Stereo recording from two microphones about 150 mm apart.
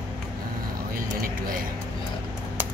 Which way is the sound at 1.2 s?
70° right (ahead or behind).